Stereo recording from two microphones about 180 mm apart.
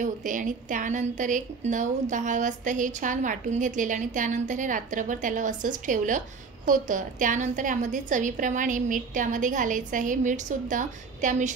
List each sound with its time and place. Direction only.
0.0 s a woman's voice: 45° right (ahead or behind)